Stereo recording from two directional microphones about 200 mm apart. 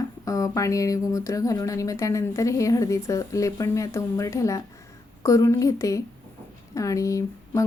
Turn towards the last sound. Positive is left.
turn(degrees=15)  # may be behind; listen again after turning